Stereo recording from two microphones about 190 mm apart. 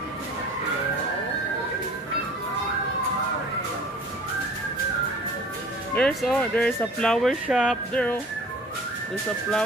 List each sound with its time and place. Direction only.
5.9 s speech: 5° left (ahead or behind)